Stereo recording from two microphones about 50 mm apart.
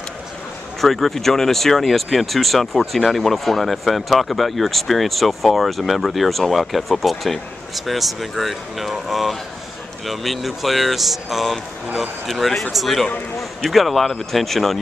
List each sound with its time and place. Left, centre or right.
0.7 s speech: centre